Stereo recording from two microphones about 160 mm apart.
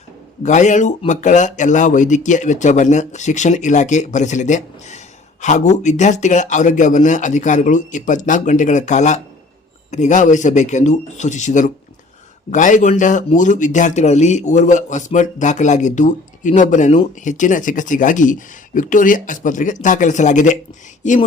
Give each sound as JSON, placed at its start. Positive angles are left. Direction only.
{"t": 0.4, "sound": "speech", "side_deg": 50}